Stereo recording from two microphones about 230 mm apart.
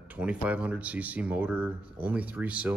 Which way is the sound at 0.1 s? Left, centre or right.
Centre.